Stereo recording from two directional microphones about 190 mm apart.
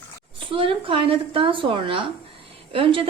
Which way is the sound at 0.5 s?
30° right (ahead or behind).